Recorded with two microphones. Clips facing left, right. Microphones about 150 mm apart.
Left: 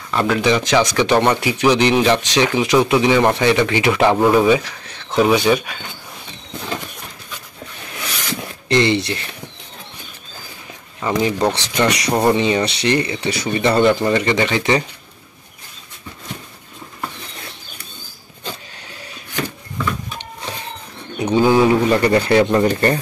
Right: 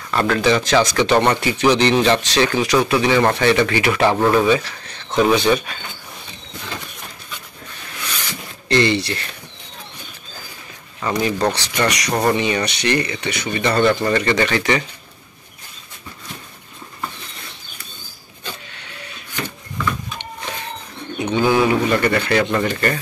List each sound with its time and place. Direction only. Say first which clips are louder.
0.1 s speech: even; 15° left (ahead or behind)
8.6 s speech: left 1 dB; 20° left (ahead or behind)
11.0 s speech: left 2 dB; 15° left (ahead or behind)
11.5 s speech: left 2 dB; 25° left (ahead or behind)
13.7 s speech: left 1 dB; 15° left (ahead or behind)
19.8 s a sound: even; 30° left (ahead or behind)
21.2 s speech: left 3 dB; 30° left (ahead or behind)